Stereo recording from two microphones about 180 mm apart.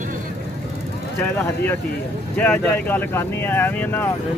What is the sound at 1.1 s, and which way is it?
Speech, 10° left (ahead or behind).